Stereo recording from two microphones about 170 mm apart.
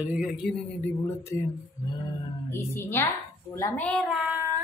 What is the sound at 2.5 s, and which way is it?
Speech, 15° left (ahead or behind).